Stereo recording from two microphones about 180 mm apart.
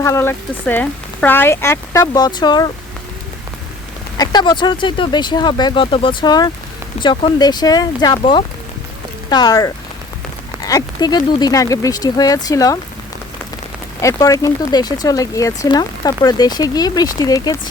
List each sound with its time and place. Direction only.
0.0 s speech: 15° left (ahead or behind)
4.2 s speech: 25° left (ahead or behind)
14.0 s speech: 20° left (ahead or behind)